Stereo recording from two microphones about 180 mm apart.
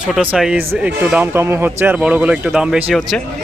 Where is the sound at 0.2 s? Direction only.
5° right (ahead or behind).